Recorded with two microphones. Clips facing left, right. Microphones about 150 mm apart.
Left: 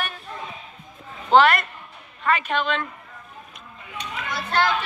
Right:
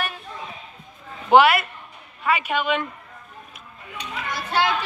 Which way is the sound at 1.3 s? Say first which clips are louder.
Right 1 dB; 10° right (ahead or behind).